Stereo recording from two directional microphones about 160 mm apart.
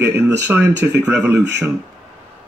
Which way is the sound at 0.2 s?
15° right (ahead or behind).